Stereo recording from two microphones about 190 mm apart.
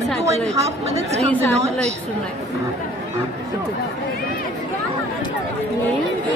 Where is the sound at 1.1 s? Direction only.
35° right (ahead or behind).